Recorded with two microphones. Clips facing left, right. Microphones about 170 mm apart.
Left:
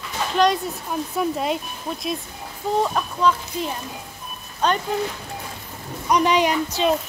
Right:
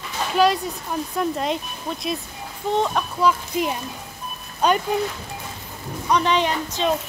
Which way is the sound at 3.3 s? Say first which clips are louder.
Even; 10° right (ahead or behind).